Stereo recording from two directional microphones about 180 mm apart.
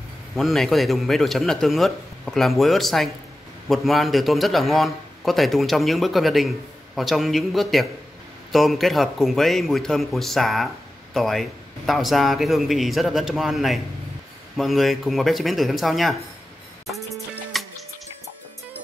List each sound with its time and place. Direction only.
0.4 s a man's voice: centre (ahead or behind)
16.8 s music: centre (ahead or behind)